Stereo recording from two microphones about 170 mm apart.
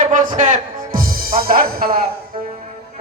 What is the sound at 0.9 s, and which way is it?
Music, 60° right (ahead or behind).